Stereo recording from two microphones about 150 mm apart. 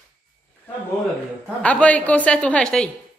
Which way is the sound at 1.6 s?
10° left (ahead or behind).